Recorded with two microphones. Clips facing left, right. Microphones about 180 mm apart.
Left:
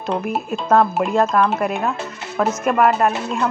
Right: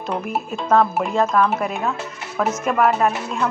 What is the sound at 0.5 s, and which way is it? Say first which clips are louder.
Speech: left 1 dB; 5° left (ahead or behind).